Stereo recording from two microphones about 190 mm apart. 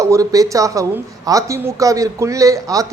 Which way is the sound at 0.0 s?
15° right (ahead or behind).